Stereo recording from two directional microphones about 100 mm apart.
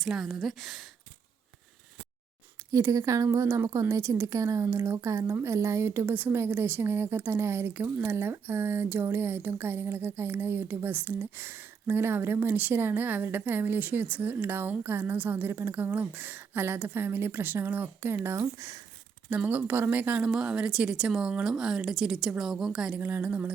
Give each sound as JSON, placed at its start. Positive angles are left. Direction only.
{"t": 0.0, "sound": "a woman's voice", "side_deg": 0}
{"t": 2.7, "sound": "speech", "side_deg": -35}
{"t": 19.3, "sound": "speech", "side_deg": -15}
{"t": 23.0, "sound": "speech", "side_deg": -20}